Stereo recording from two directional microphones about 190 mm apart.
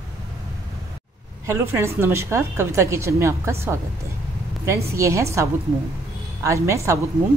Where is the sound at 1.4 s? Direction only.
15° right (ahead or behind).